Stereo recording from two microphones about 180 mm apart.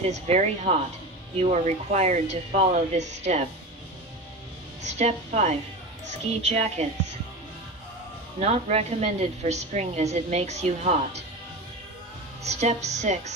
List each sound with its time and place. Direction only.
0.0 s a woman's voice: 35° right (ahead or behind)
4.8 s a woman's voice: 40° right (ahead or behind)
8.4 s a woman's voice: 35° right (ahead or behind)
12.4 s a woman's voice: 40° right (ahead or behind)